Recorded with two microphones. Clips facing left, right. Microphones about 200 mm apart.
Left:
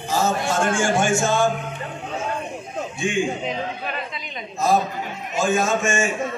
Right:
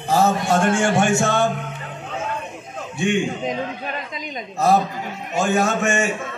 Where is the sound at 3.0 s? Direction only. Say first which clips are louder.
Right 3 dB; 65° right (ahead or behind).